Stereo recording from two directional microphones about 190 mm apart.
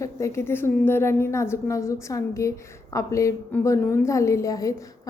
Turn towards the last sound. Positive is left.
turn(degrees=20)  # may be behind; listen again after turning